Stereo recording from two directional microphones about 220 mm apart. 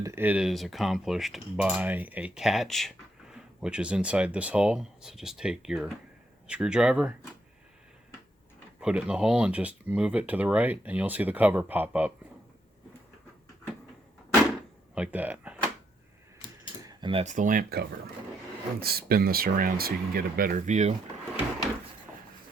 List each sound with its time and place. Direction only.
0.0 s speech: 10° right (ahead or behind)
8.8 s speech: 5° right (ahead or behind)
14.9 s speech: 5° right (ahead or behind)
17.0 s speech: 25° right (ahead or behind)